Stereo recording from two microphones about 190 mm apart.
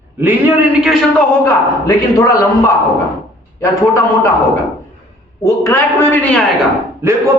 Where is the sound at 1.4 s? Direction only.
15° left (ahead or behind).